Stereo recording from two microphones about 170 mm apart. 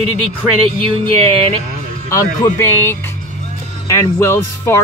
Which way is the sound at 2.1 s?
15° left (ahead or behind).